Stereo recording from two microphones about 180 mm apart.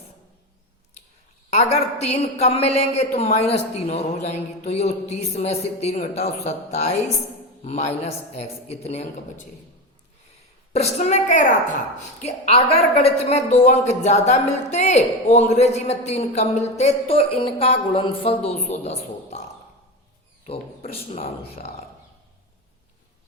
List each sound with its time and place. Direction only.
1.5 s a woman's voice: 40° left (ahead or behind)
10.7 s a woman's voice: 40° left (ahead or behind)
20.5 s a woman's voice: 35° left (ahead or behind)